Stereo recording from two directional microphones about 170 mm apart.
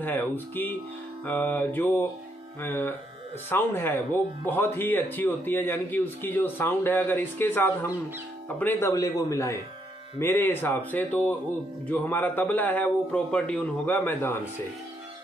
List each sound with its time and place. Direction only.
0.0 s speech: 10° left (ahead or behind)